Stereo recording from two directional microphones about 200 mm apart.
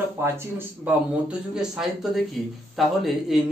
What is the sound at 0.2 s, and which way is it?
A man's voice, 10° right (ahead or behind).